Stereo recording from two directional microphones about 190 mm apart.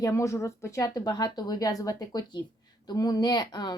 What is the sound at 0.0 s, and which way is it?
Speech, 15° left (ahead or behind).